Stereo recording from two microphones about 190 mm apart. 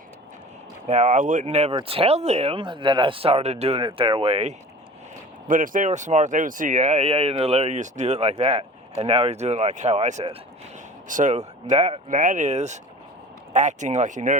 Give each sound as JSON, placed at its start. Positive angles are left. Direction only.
{"t": 0.9, "sound": "speech", "side_deg": -40}
{"t": 5.5, "sound": "speech", "side_deg": -45}